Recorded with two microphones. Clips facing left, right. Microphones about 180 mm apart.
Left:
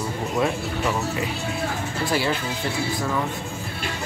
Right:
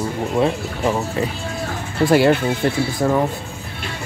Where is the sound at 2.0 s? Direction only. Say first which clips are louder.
Right 11 dB; 55° right (ahead or behind).